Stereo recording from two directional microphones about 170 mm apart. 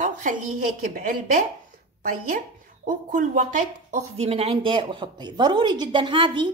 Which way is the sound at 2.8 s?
50° right (ahead or behind).